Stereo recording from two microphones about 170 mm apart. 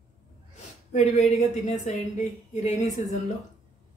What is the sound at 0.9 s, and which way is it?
Speech, 40° left (ahead or behind).